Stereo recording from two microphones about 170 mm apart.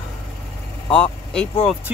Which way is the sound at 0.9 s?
5° left (ahead or behind).